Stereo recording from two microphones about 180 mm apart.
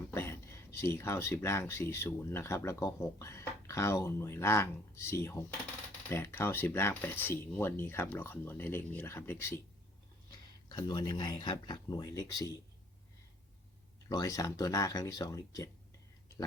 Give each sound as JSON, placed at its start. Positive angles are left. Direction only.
{"t": 0.1, "sound": "speech", "side_deg": 15}
{"t": 10.3, "sound": "speech", "side_deg": 25}
{"t": 14.1, "sound": "speech", "side_deg": 20}